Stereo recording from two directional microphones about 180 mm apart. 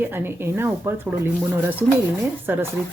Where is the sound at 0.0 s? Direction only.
10° right (ahead or behind).